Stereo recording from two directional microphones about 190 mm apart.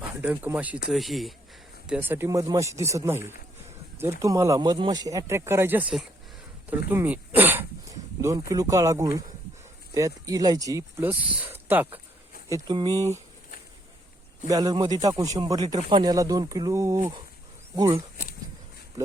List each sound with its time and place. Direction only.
0.0 s speech: 10° right (ahead or behind)
12.5 s speech: 20° right (ahead or behind)
14.4 s speech: 20° right (ahead or behind)